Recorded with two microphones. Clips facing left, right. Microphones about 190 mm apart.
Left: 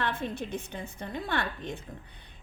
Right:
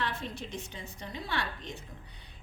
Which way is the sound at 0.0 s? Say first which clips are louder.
Left 4 dB; 55° left (ahead or behind).